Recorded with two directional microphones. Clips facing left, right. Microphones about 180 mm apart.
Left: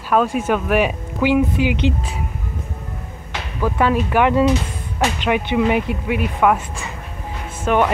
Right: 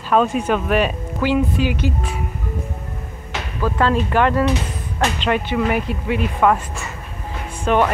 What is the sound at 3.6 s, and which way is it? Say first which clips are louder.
Speech: left 1 dB; 10° left (ahead or behind).